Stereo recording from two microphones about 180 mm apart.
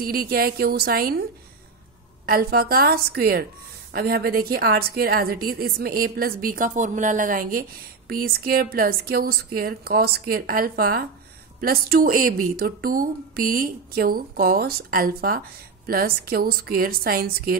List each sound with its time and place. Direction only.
0.0 s a woman's voice: 55° right (ahead or behind)
2.2 s a woman's voice: 55° right (ahead or behind)